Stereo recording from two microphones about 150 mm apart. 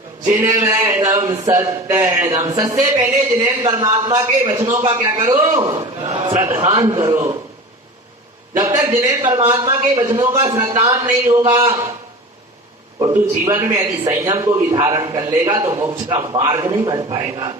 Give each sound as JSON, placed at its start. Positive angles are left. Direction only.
{"t": 0.3, "sound": "a man's voice", "side_deg": -20}
{"t": 4.9, "sound": "a man's voice", "side_deg": -20}
{"t": 8.5, "sound": "a man's voice", "side_deg": -25}
{"t": 13.4, "sound": "a man's voice", "side_deg": -20}